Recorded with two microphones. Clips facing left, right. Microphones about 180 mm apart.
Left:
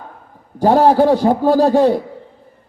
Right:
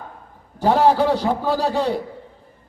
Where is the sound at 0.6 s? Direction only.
50° left (ahead or behind).